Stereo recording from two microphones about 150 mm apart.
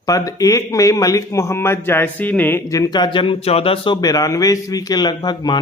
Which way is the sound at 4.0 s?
25° left (ahead or behind).